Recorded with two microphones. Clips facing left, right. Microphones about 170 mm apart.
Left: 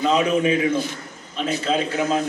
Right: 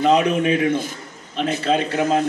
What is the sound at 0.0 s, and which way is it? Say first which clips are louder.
A man's voice: right 2 dB; 50° right (ahead or behind).